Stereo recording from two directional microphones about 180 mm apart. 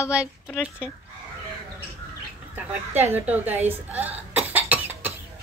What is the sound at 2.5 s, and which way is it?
A woman's voice, 10° right (ahead or behind).